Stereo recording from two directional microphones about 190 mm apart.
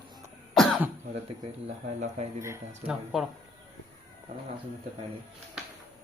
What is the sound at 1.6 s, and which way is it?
Speech, 35° right (ahead or behind).